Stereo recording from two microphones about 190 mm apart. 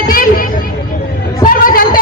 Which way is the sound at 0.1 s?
50° left (ahead or behind).